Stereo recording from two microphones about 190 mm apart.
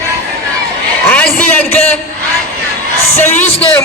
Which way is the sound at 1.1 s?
5° left (ahead or behind).